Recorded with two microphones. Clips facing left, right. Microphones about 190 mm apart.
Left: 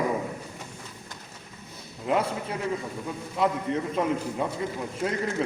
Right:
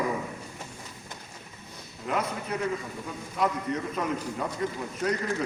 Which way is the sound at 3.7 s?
25° left (ahead or behind).